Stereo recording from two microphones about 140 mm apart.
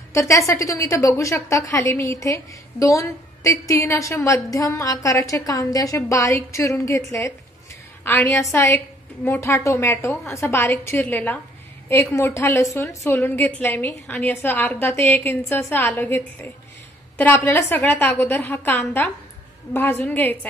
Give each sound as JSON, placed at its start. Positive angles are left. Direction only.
{"t": 0.1, "sound": "a woman's voice", "side_deg": 20}